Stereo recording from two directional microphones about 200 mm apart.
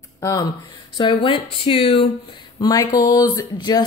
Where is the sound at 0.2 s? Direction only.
15° left (ahead or behind).